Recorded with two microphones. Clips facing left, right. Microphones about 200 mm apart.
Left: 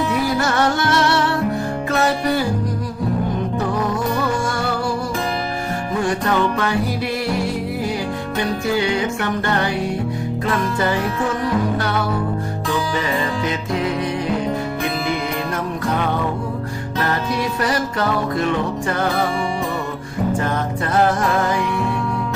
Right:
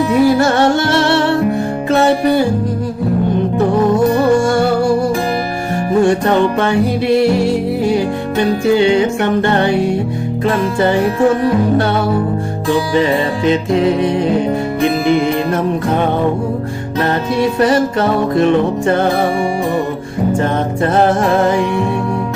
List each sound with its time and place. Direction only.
0.1 s music: 25° right (ahead or behind)
3.6 s music: 30° right (ahead or behind)
6.1 s music: 25° right (ahead or behind)
8.8 s music: 25° right (ahead or behind)
13.0 s music: 25° right (ahead or behind)
17.6 s music: 25° right (ahead or behind)
20.4 s music: 25° right (ahead or behind)